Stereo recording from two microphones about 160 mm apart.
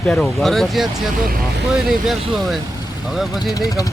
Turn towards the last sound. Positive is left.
turn(degrees=20)  # may be behind; listen again after turning